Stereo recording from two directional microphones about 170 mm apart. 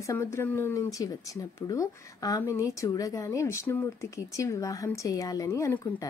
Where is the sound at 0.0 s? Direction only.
15° left (ahead or behind).